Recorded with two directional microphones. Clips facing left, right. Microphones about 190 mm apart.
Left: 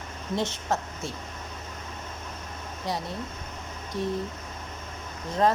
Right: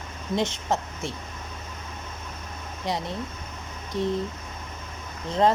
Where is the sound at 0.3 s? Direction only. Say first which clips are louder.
Right 2 dB; 20° right (ahead or behind).